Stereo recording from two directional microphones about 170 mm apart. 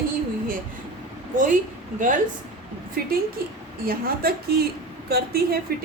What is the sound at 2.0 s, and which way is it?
Speech, 50° right (ahead or behind).